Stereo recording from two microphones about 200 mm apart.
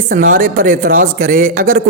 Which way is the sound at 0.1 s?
45° right (ahead or behind).